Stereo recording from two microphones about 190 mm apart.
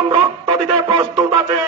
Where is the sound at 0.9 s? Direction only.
25° right (ahead or behind).